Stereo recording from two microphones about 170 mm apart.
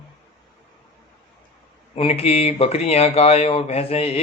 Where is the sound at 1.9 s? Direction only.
35° left (ahead or behind).